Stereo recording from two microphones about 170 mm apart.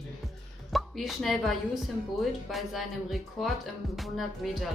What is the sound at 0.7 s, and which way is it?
Speech, centre (ahead or behind).